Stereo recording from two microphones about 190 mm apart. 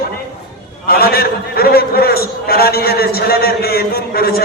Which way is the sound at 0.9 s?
55° left (ahead or behind).